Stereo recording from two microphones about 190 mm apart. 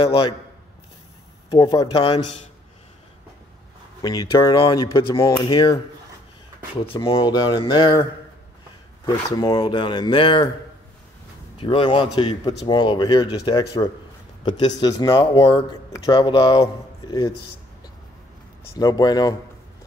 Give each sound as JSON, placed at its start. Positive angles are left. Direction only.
{"t": 0.0, "sound": "speech", "side_deg": 25}
{"t": 1.5, "sound": "speech", "side_deg": 25}
{"t": 4.0, "sound": "speech", "side_deg": 20}
{"t": 6.9, "sound": "speech", "side_deg": 25}
{"t": 11.5, "sound": "speech", "side_deg": 25}
{"t": 18.8, "sound": "speech", "side_deg": 20}